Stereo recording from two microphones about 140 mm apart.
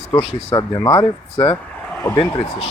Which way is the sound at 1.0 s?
40° left (ahead or behind).